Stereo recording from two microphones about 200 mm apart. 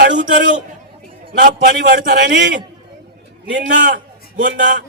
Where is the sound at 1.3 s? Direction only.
40° right (ahead or behind); by 3.8 s 65° right (ahead or behind).